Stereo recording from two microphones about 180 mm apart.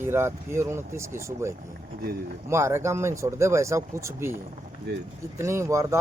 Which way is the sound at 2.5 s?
15° right (ahead or behind).